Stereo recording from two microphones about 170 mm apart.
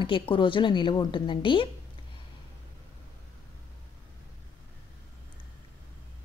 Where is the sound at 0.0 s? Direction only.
30° left (ahead or behind).